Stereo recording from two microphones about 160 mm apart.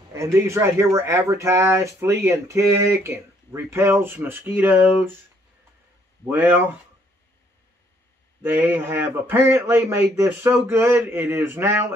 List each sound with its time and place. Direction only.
0.1 s speech: 15° right (ahead or behind)
6.2 s speech: 15° right (ahead or behind)
8.4 s speech: 10° right (ahead or behind)